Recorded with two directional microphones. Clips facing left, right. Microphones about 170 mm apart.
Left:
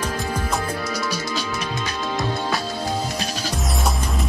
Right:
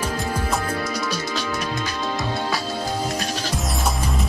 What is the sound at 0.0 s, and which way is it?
Music, 10° right (ahead or behind).